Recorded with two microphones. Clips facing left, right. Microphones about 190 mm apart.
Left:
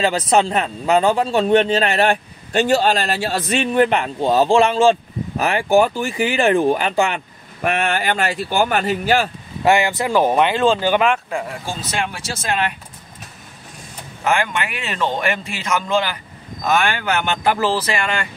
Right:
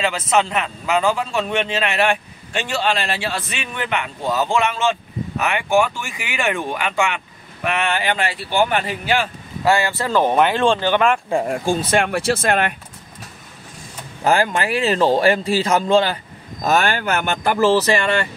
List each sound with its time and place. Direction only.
0.0 s a man's voice: 35° left (ahead or behind)
7.6 s speech: 45° left (ahead or behind)
9.7 s speech: 15° left (ahead or behind)
10.3 s speech: centre (ahead or behind)
11.4 s speech: 50° right (ahead or behind)
14.2 s speech: 35° right (ahead or behind)